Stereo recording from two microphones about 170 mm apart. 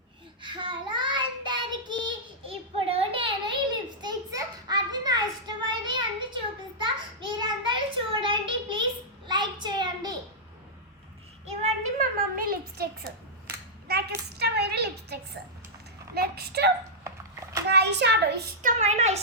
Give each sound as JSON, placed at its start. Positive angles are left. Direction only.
{"t": 0.4, "sound": "child singing", "side_deg": -30}
{"t": 11.4, "sound": "child singing", "side_deg": -40}
{"t": 12.4, "sound": "a woman's voice", "side_deg": -65}
{"t": 13.8, "sound": "a sound", "side_deg": -70}
{"t": 16.1, "sound": "speech", "side_deg": -65}
{"t": 17.7, "sound": "a child's voice", "side_deg": -85}
{"t": 18.6, "sound": "a woman's voice", "side_deg": -40}